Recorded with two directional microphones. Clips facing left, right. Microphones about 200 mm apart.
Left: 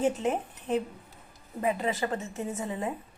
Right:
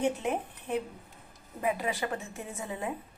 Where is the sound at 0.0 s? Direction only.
20° left (ahead or behind).